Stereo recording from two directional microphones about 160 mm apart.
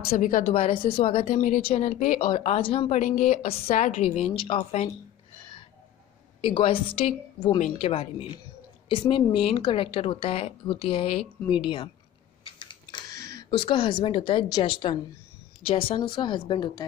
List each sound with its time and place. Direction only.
0.1 s a woman's voice: 60° left (ahead or behind)
0.6 s a woman's voice: 35° left (ahead or behind)
1.2 s speech: 55° left (ahead or behind)
1.6 s speech: 40° left (ahead or behind)
2.1 s a woman's voice: 35° left (ahead or behind)
3.0 s a woman's voice: 55° left (ahead or behind)
3.4 s a woman's voice: 40° left (ahead or behind)
6.4 s a woman's voice: 35° left (ahead or behind)
12.4 s a sound: 30° left (ahead or behind)
13.2 s a sound: 20° left (ahead or behind)
13.5 s a woman's voice: 30° left (ahead or behind)